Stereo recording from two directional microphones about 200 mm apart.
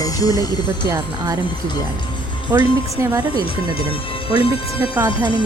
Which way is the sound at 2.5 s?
15° right (ahead or behind).